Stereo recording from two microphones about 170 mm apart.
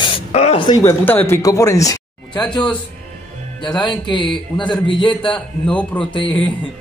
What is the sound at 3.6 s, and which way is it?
Speech, 25° left (ahead or behind).